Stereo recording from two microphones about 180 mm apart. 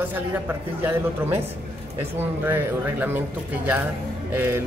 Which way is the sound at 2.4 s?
10° right (ahead or behind).